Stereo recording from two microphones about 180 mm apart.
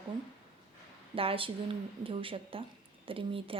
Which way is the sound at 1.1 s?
30° right (ahead or behind).